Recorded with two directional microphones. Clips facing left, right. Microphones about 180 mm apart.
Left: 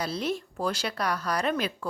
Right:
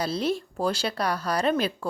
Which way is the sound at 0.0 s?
30° right (ahead or behind).